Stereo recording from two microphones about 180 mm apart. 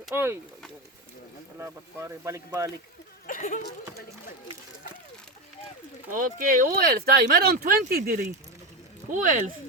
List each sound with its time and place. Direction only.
0.1 s speech: 10° right (ahead or behind)
1.5 s speech: 15° right (ahead or behind)
3.2 s a sound: 50° left (ahead or behind)
6.1 s speech: 45° right (ahead or behind)
9.0 s speech: 45° right (ahead or behind)